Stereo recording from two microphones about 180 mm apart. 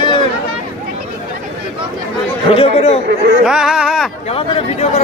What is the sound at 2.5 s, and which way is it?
Speech, 30° left (ahead or behind).